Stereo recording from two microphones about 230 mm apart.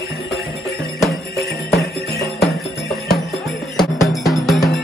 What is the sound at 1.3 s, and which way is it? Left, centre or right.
Jingle bell, left.